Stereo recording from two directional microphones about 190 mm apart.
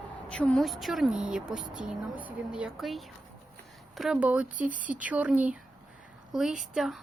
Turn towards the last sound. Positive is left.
turn(degrees=0)  # may be behind; listen again after turning